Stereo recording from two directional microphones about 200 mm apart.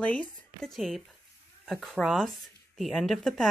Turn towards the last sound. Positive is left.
turn(degrees=0)  # may be behind; listen again after turning